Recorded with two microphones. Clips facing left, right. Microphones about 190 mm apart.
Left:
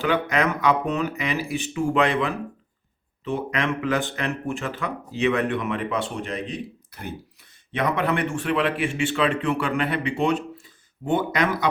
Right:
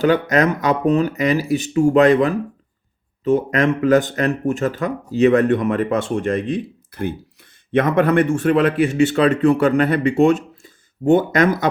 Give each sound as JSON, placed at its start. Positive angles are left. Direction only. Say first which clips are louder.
{"t": 0.0, "sound": "a man's voice", "louder": "right 7 dB", "side_deg": -40}
{"t": 7.7, "sound": "a man's voice", "louder": "right 8 dB", "side_deg": -50}